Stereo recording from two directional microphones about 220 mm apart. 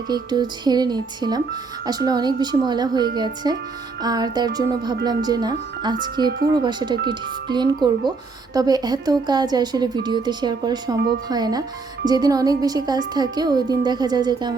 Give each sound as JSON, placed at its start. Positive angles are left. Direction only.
{"t": 0.1, "sound": "speech", "side_deg": -20}